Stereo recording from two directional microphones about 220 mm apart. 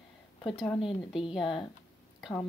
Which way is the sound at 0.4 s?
25° left (ahead or behind).